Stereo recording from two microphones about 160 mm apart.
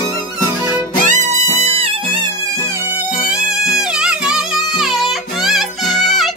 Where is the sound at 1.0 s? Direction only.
50° right (ahead or behind).